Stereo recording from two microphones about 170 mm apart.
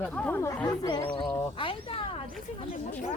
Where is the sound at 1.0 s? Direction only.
30° left (ahead or behind).